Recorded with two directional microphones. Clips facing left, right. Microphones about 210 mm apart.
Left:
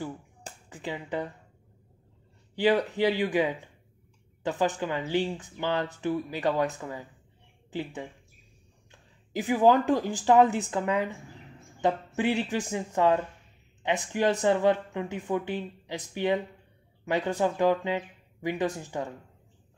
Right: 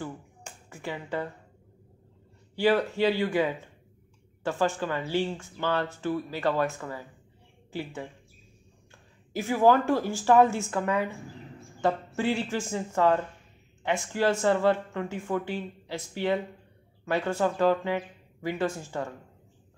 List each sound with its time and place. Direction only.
0.5 s finger snapping: 35° left (ahead or behind)
0.8 s speech: 15° left (ahead or behind)
2.5 s speech: 15° left (ahead or behind)
8.9 s speech: 15° left (ahead or behind)